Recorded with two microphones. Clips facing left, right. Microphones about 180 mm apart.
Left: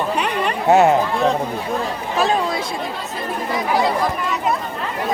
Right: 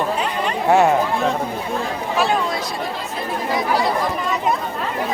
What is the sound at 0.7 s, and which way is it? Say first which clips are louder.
Speech: left 2 dB; 20° left (ahead or behind).